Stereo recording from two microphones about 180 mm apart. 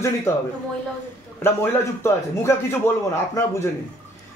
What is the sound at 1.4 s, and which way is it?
Speech, 15° left (ahead or behind).